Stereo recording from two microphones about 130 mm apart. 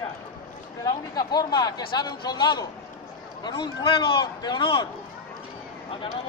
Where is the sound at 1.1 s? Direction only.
30° left (ahead or behind).